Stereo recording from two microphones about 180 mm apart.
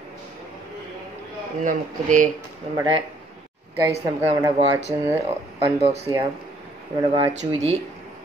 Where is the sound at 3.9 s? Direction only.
35° right (ahead or behind).